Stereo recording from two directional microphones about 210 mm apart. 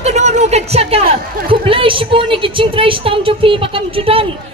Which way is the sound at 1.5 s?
25° right (ahead or behind).